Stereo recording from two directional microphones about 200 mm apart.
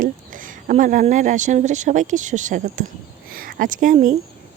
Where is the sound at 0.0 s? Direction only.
40° right (ahead or behind).